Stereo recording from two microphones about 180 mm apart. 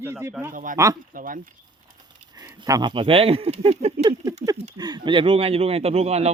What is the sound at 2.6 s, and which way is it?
Speech, 20° right (ahead or behind).